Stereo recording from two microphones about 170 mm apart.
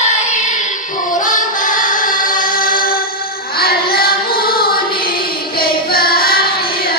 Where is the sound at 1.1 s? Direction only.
50° left (ahead or behind).